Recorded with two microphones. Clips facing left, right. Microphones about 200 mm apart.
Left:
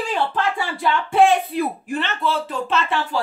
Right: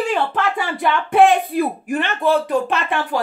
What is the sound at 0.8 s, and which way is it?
Speech, 55° right (ahead or behind).